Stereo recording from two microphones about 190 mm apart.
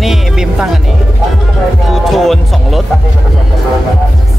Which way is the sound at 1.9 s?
Centre (ahead or behind).